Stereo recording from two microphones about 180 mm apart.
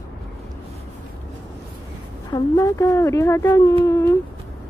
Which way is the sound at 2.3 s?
20° left (ahead or behind).